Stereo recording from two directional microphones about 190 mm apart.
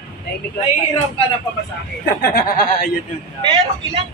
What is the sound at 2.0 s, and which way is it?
Speech, 55° left (ahead or behind).